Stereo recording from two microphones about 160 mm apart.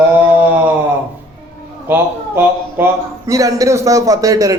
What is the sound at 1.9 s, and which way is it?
A man's voice, 15° right (ahead or behind).